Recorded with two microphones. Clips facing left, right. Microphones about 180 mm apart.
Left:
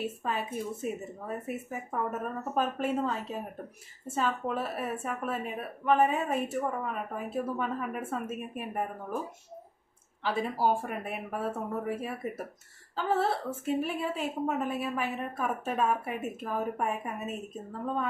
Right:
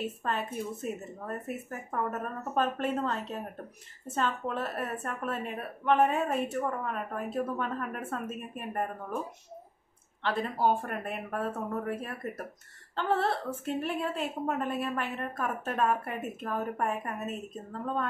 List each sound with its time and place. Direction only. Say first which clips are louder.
0.0 s a woman's voice: even; 5° left (ahead or behind)
10.2 s a woman's voice: even; 5° left (ahead or behind)